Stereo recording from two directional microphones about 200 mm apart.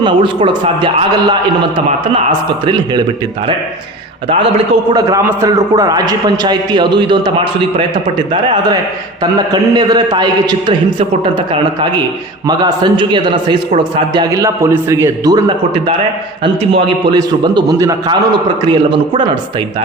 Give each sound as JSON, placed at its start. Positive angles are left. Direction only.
{"t": 0.0, "sound": "a man's voice", "side_deg": -25}
{"t": 2.6, "sound": "a man's voice", "side_deg": -20}
{"t": 4.9, "sound": "a man's voice", "side_deg": -15}